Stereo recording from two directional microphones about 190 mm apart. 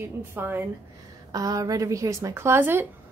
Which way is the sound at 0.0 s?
10° right (ahead or behind).